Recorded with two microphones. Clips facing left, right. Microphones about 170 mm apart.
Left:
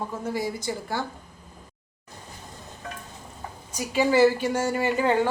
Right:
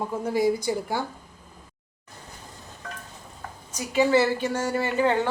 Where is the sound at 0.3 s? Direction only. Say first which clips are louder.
Right 9 dB; 15° right (ahead or behind).